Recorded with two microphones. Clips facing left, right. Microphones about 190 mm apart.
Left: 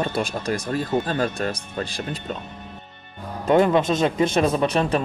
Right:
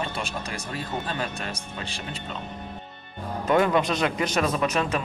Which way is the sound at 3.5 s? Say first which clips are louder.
Left 4 dB; 25° left (ahead or behind).